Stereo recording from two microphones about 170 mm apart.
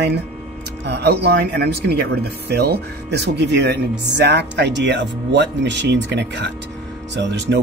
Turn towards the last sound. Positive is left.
turn(degrees=-90)